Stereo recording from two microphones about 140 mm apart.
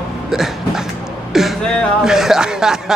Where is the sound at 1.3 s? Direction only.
5° right (ahead or behind).